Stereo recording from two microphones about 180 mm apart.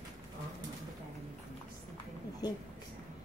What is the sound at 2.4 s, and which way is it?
Speech, 20° left (ahead or behind).